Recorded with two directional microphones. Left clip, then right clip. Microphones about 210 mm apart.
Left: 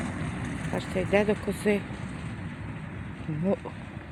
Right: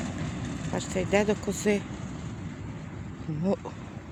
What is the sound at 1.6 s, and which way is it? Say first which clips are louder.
Speech: even; centre (ahead or behind).